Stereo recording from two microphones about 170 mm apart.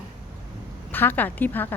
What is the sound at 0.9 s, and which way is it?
Speech, 10° left (ahead or behind).